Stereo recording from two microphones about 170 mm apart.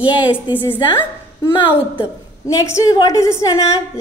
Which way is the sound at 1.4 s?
30° left (ahead or behind).